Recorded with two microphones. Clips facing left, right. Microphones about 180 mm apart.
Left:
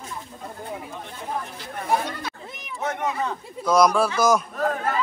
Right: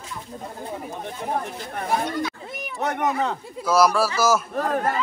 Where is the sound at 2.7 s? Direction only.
65° right (ahead or behind).